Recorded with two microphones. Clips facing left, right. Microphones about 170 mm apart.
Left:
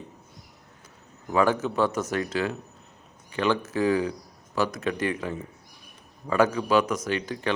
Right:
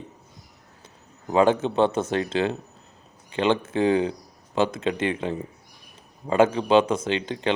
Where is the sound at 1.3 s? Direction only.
25° right (ahead or behind).